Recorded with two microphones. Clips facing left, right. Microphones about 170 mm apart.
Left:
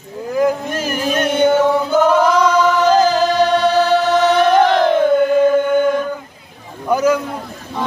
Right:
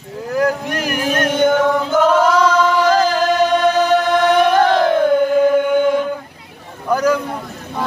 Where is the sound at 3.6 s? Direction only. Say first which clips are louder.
Even; 15° right (ahead or behind); by 5.4 s centre (ahead or behind).